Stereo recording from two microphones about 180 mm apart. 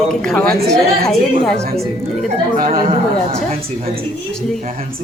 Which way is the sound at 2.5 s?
50° right (ahead or behind).